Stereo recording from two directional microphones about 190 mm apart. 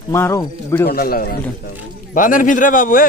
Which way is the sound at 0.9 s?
50° left (ahead or behind).